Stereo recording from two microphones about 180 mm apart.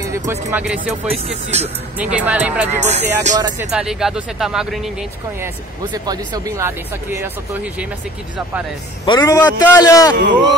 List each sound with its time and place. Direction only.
0.3 s speech: 10° right (ahead or behind)
1.0 s speech: 35° right (ahead or behind)
2.0 s speech: 5° right (ahead or behind)
2.8 s speech: 40° right (ahead or behind)
3.3 s speech: 20° right (ahead or behind)
3.7 s speech: 5° right (ahead or behind)
6.0 s speech: 20° right (ahead or behind)
9.0 s a man's voice: 20° left (ahead or behind)